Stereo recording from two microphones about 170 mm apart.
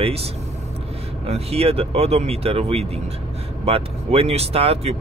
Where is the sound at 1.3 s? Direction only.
35° right (ahead or behind).